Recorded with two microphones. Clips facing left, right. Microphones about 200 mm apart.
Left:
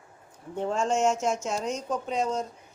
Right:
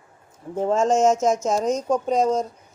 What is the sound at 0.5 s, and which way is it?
A woman's voice, 40° right (ahead or behind).